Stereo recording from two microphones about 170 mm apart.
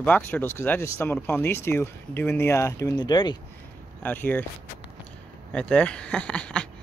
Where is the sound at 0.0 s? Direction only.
10° left (ahead or behind).